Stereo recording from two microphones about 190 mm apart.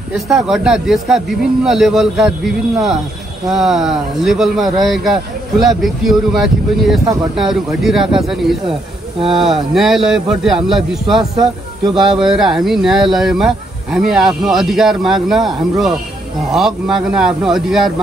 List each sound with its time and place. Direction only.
0.1 s speech: centre (ahead or behind)
11.3 s speech: 25° right (ahead or behind)
12.2 s speech: centre (ahead or behind)